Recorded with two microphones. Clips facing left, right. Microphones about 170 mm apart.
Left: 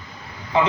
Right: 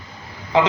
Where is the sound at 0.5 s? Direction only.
90° right.